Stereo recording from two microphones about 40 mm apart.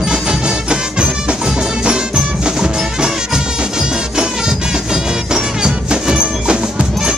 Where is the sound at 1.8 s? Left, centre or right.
Right.